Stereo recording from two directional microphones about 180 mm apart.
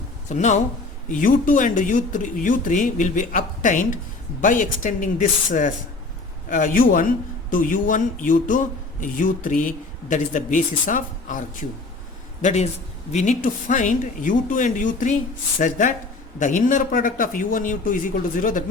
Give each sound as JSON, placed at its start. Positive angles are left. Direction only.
{"t": 0.3, "sound": "a man's voice", "side_deg": 40}